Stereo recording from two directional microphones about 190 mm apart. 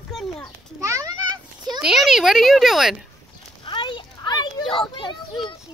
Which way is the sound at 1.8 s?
Centre (ahead or behind).